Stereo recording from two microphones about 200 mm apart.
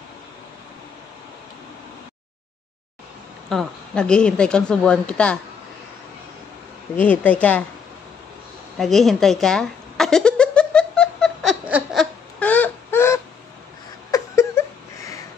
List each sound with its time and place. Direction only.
3.4 s speech: 5° left (ahead or behind)
7.0 s a woman's voice: 10° left (ahead or behind)
8.7 s a sound: centre (ahead or behind)